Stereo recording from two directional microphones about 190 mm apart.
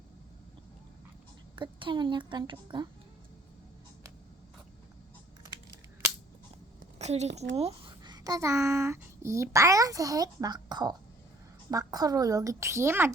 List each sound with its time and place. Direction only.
1.5 s a woman's voice: 25° right (ahead or behind)
7.0 s a woman's voice: 35° right (ahead or behind); by 13.1 s 10° right (ahead or behind)